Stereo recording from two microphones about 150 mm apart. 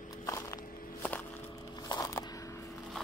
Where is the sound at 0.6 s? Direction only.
70° left (ahead or behind).